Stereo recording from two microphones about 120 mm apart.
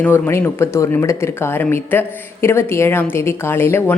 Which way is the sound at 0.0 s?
20° left (ahead or behind).